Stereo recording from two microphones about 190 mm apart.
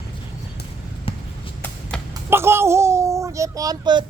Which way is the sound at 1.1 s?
30° left (ahead or behind).